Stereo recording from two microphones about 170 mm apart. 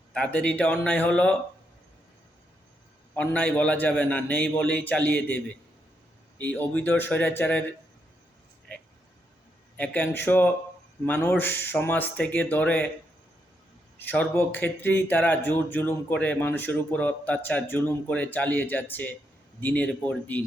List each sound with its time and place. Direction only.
0.1 s speech: 5° left (ahead or behind)
3.2 s speech: 10° left (ahead or behind)
6.4 s speech: 10° left (ahead or behind)
9.7 s speech: 10° left (ahead or behind)
14.0 s speech: 10° left (ahead or behind)